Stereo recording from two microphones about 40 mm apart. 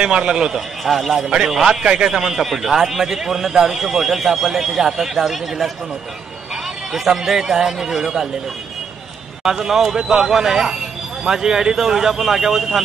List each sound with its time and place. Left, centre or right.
0.0 s a man's voice: right
0.6 s a man's voice: centre
9.4 s a man's voice: centre